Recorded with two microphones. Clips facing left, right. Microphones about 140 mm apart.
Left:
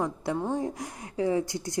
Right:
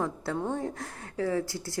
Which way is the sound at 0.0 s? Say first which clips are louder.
Left 2 dB; 15° left (ahead or behind).